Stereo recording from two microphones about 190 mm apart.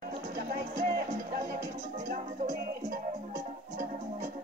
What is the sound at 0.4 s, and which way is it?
Music, 50° right (ahead or behind).